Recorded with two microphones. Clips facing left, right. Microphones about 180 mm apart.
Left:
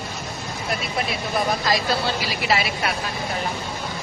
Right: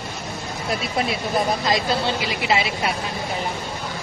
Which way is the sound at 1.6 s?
25° right (ahead or behind).